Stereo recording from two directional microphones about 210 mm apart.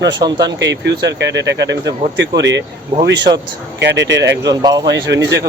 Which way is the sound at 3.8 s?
60° right (ahead or behind).